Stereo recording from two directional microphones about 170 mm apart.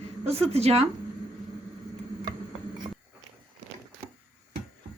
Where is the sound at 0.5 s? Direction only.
40° right (ahead or behind).